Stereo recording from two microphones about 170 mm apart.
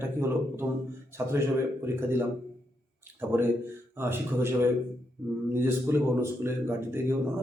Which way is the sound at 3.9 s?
15° right (ahead or behind).